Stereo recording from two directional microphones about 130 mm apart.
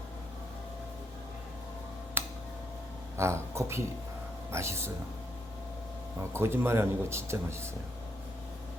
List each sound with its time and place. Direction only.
2.2 s tick-tock: 15° right (ahead or behind)
3.2 s speech: 20° right (ahead or behind)
6.3 s speech: 20° right (ahead or behind)